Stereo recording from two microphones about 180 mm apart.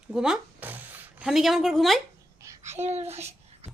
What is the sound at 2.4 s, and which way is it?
Babbling, 15° right (ahead or behind).